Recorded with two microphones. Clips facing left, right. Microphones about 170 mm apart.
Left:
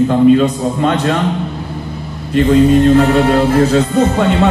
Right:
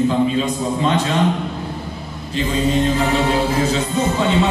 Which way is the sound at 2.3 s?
60° left (ahead or behind).